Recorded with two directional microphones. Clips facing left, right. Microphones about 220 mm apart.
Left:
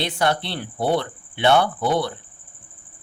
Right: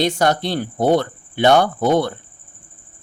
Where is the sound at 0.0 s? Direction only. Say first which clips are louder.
Right 5 dB; 45° right (ahead or behind).